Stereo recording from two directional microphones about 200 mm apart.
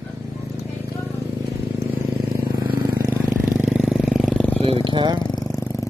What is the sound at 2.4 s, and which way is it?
Vehicle, 20° right (ahead or behind).